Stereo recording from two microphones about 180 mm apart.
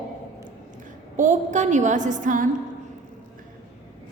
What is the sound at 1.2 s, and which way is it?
A woman's voice, 40° right (ahead or behind).